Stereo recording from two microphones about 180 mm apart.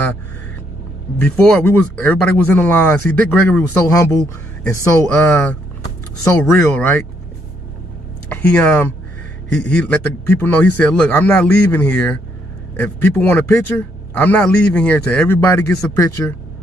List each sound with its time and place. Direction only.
1.1 s speech: 10° left (ahead or behind)
8.3 s speech: 5° left (ahead or behind)